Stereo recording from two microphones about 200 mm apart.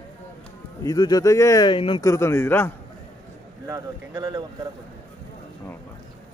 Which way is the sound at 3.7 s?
15° right (ahead or behind).